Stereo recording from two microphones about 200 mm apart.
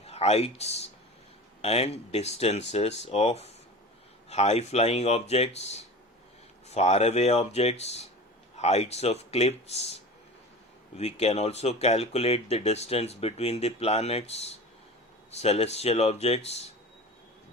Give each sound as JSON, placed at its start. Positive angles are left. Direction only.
{"t": 0.0, "sound": "speech", "side_deg": 30}